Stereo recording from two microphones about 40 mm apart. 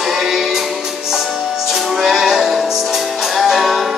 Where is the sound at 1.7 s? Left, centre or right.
Centre.